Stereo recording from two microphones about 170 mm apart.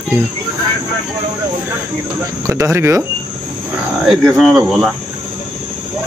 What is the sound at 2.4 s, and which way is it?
Speech, 15° right (ahead or behind).